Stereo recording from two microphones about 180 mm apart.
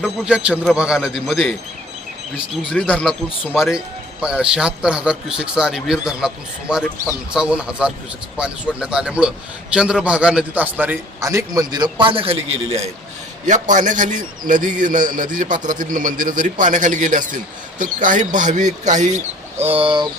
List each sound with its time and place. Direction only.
0.0 s a man's voice: 5° right (ahead or behind)
2.6 s a man's voice: 5° left (ahead or behind); by 12.4 s 30° right (ahead or behind)
13.4 s a man's voice: 45° right (ahead or behind)
19.6 s speech: 30° right (ahead or behind)